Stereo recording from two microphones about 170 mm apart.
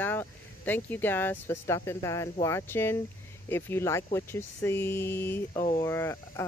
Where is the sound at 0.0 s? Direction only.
10° left (ahead or behind).